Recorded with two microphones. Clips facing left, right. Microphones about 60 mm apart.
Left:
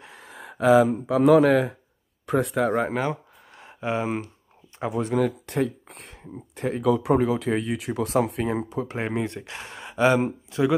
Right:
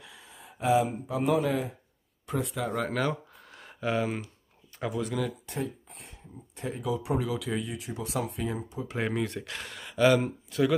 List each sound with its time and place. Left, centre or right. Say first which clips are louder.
0.0 s speech: left 7 dB; left
2.7 s speech: left 5 dB; left
3.3 s a sound: left 2 dB; centre
3.8 s speech: left 3 dB; left
4.9 s speech: left 8 dB; left
5.5 s speech: left 9 dB; left
7.2 s speech: left 8 dB; left
7.7 s speech: left 10 dB; left
9.5 s speech: left 2 dB; left